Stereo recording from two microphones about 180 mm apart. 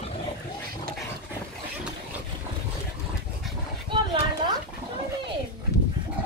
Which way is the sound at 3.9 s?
25° right (ahead or behind).